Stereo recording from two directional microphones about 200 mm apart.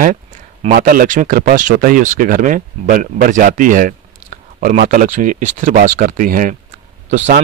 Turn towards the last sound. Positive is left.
turn(degrees=-35)  # may be behind; listen again after turning